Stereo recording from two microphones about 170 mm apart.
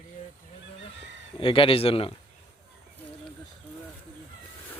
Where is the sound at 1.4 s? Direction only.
30° left (ahead or behind).